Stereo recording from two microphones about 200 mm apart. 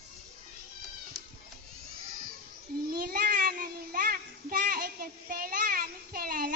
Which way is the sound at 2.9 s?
50° right (ahead or behind).